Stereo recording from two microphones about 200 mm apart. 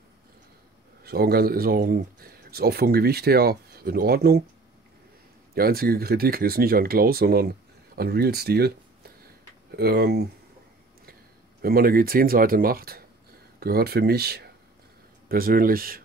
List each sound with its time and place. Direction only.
1.0 s speech: 50° right (ahead or behind)
5.5 s speech: 50° right (ahead or behind)
11.6 s speech: 50° right (ahead or behind)